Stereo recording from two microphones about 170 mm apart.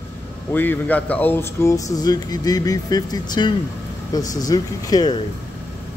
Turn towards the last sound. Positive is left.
turn(degrees=20)  # may be behind; listen again after turning